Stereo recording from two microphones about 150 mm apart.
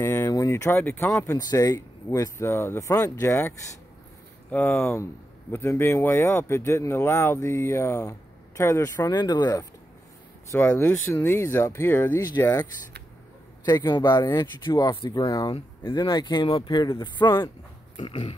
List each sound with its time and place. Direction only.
0.0 s speech: 15° left (ahead or behind)
10.5 s speech: 15° left (ahead or behind)
13.7 s speech: 30° left (ahead or behind)